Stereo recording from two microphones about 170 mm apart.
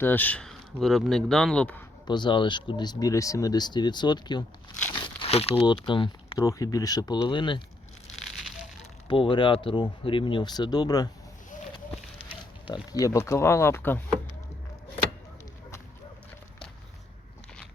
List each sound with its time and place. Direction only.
0.0 s speech: 10° left (ahead or behind)
2.0 s speech: 25° left (ahead or behind)
4.9 s a sound: 30° left (ahead or behind)
5.7 s speech: 30° left (ahead or behind)
9.0 s speech: 30° left (ahead or behind)
12.6 s speech: 25° left (ahead or behind)